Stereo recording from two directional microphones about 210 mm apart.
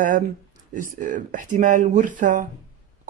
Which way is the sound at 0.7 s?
40° right (ahead or behind).